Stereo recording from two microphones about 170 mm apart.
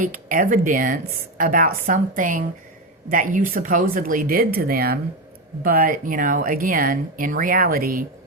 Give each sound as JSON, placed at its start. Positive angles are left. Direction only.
{"t": 0.0, "sound": "a woman's voice", "side_deg": -55}